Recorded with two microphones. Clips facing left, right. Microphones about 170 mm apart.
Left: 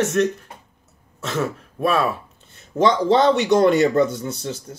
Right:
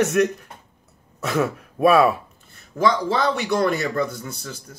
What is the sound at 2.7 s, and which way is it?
A man's voice, 25° left (ahead or behind).